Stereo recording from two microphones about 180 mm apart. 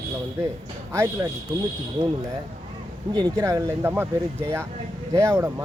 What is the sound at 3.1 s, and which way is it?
Speech, 20° right (ahead or behind).